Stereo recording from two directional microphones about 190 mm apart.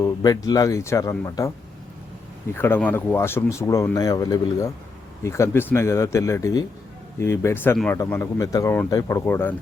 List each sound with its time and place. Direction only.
0.0 s speech: 20° left (ahead or behind)